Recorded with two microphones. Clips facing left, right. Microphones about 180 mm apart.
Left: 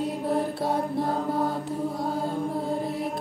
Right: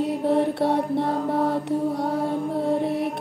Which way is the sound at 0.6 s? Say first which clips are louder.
Right 4 dB; 65° right (ahead or behind).